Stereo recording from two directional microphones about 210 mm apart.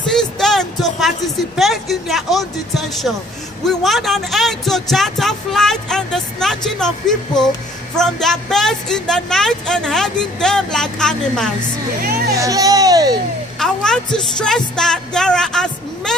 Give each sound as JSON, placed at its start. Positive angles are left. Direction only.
{"t": 0.1, "sound": "a sound", "side_deg": 0}
{"t": 1.6, "sound": "speech", "side_deg": 0}
{"t": 12.0, "sound": "speech", "side_deg": -45}
{"t": 12.4, "sound": "a child's voice", "side_deg": -15}
{"t": 13.6, "sound": "speech", "side_deg": 5}